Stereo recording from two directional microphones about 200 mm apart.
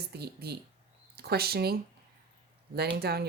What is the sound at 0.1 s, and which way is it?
Speech, 55° right (ahead or behind).